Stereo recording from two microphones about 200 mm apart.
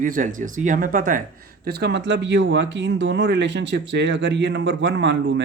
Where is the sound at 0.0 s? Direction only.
40° right (ahead or behind).